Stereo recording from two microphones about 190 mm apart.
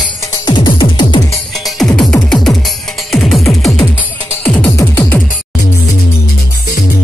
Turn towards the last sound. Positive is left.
turn(degrees=10)  # may be behind; listen again after turning